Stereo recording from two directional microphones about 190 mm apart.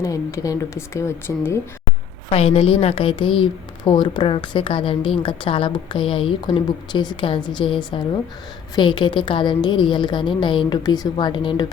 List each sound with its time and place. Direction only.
0.0 s speech: 15° left (ahead or behind)
2.3 s a woman's voice: 30° left (ahead or behind)